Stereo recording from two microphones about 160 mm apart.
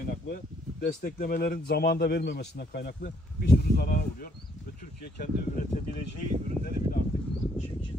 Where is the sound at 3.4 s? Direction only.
70° left (ahead or behind).